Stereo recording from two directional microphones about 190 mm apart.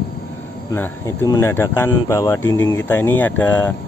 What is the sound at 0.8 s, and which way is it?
Speech, 15° left (ahead or behind).